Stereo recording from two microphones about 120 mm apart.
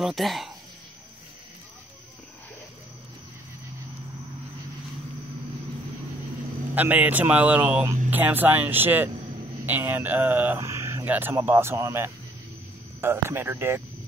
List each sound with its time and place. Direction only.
0.0 s speech: centre (ahead or behind)
6.7 s speech: 15° right (ahead or behind)